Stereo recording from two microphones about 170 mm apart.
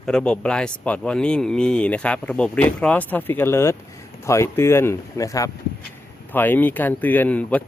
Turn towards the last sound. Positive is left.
turn(degrees=10)  # may be behind; listen again after turning